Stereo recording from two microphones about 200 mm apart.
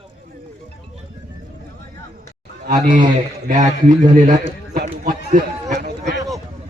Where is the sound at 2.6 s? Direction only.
45° right (ahead or behind).